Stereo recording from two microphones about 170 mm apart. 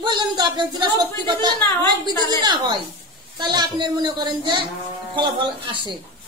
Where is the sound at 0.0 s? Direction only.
25° right (ahead or behind).